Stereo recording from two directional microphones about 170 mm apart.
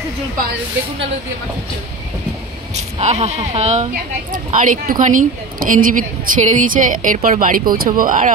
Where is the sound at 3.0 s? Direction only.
40° right (ahead or behind).